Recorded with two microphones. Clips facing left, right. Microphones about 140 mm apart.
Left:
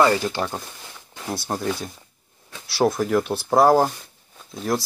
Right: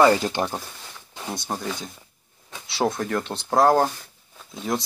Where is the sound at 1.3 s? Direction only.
5° left (ahead or behind).